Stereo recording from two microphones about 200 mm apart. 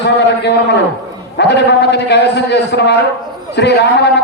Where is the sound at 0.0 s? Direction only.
60° left (ahead or behind).